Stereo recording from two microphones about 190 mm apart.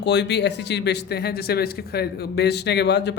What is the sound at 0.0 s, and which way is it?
Speech, 65° left (ahead or behind).